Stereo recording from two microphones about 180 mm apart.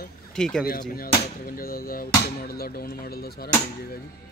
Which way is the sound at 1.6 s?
55° left (ahead or behind).